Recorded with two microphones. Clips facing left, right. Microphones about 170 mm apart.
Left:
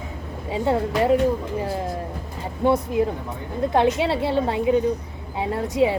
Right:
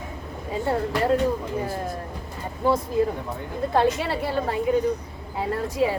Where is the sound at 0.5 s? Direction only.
15° left (ahead or behind).